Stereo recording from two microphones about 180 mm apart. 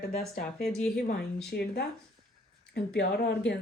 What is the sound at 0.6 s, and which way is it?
Speech, centre (ahead or behind).